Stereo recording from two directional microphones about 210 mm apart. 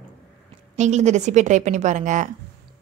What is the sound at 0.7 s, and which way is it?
A woman's voice, 35° right (ahead or behind).